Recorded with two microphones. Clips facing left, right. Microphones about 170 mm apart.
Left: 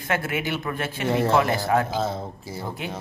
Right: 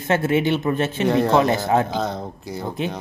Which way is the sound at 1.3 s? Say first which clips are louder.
Right 3 dB; 25° right (ahead or behind).